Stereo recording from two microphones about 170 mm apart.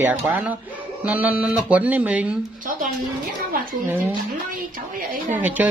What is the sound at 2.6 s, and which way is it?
Speech, 50° right (ahead or behind).